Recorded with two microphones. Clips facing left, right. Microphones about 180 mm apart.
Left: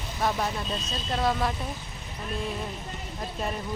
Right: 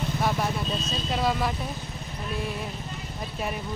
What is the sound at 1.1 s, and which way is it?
Speech, 5° right (ahead or behind).